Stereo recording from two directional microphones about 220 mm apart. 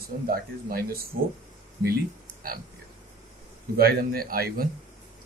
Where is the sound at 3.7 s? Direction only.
45° right (ahead or behind).